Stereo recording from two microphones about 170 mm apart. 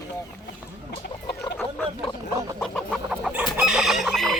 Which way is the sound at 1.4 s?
30° left (ahead or behind).